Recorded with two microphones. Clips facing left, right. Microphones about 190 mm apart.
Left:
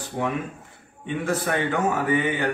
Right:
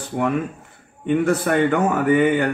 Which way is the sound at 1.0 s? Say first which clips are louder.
Right 7 dB; 55° right (ahead or behind).